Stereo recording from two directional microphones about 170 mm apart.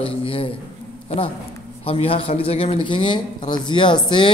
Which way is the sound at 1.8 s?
35° left (ahead or behind).